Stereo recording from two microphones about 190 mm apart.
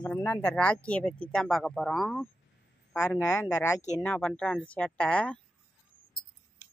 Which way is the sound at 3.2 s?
15° left (ahead or behind).